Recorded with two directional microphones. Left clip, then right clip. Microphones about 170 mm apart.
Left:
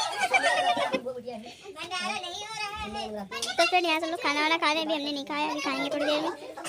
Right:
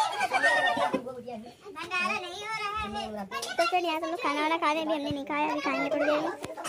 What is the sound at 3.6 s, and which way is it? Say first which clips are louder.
Speech: left 3 dB; 5° left (ahead or behind).